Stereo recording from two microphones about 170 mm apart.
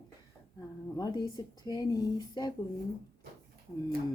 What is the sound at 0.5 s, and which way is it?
Speech, 20° left (ahead or behind).